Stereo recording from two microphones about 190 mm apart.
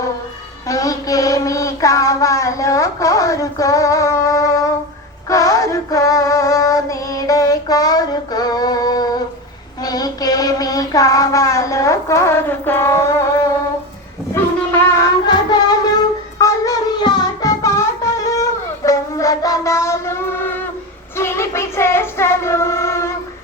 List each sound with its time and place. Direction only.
0.7 s music: 20° left (ahead or behind)
5.3 s female singing: 15° left (ahead or behind)
9.8 s child singing: 20° left (ahead or behind)
14.3 s wind instrument: 10° left (ahead or behind)
15.3 s child singing: 20° left (ahead or behind)
16.4 s music: 15° left (ahead or behind)
18.9 s child singing: 15° left (ahead or behind)